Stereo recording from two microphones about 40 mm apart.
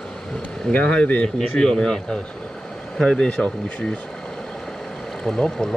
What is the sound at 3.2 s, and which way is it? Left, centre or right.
Speech, left.